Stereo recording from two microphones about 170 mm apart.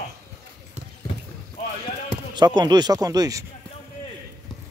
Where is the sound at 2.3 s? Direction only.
25° right (ahead or behind).